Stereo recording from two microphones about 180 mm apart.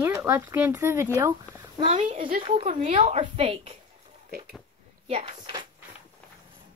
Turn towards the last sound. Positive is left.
turn(degrees=-30)  # may be behind; listen again after turning